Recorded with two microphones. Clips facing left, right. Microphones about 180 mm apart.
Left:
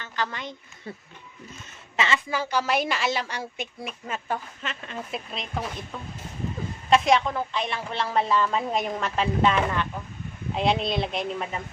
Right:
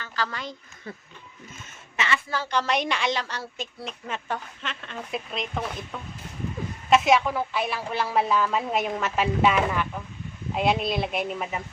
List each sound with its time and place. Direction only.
0.0 s a woman's voice: 20° left (ahead or behind)
2.0 s a woman's voice: 25° left (ahead or behind)
2.3 s a woman's voice: 10° left (ahead or behind)
6.9 s a woman's voice: 5° right (ahead or behind)